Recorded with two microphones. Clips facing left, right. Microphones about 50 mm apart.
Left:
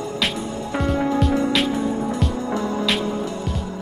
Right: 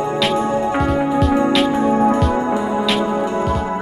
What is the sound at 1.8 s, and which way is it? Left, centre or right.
Music, right.